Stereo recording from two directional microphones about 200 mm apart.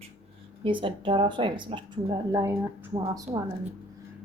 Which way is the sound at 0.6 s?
25° right (ahead or behind).